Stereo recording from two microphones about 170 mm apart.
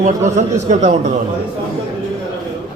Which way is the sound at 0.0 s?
45° right (ahead or behind).